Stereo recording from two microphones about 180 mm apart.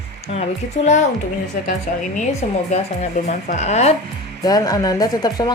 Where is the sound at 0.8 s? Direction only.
40° left (ahead or behind).